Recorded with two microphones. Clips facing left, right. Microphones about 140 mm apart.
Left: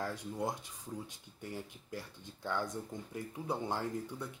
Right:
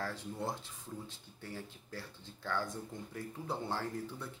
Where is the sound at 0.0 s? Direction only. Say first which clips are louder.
Left 2 dB; 15° left (ahead or behind).